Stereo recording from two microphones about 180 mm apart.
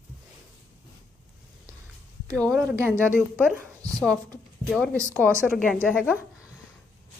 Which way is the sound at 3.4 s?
10° right (ahead or behind).